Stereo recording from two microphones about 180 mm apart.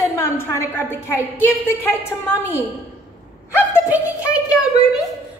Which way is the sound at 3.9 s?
5° right (ahead or behind).